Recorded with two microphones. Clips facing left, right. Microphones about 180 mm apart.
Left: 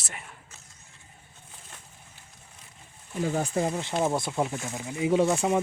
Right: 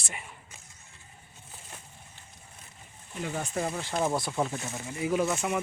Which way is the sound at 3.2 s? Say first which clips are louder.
Left 6 dB; 35° left (ahead or behind).